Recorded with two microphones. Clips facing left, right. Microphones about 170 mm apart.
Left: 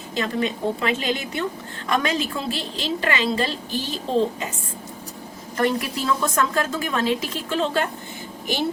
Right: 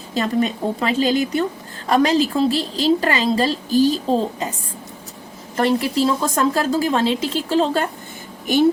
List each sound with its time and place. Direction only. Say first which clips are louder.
0.1 s a woman's voice: right 4 dB; 40° right (ahead or behind)
5.5 s a woman's voice: right 5 dB; 30° right (ahead or behind)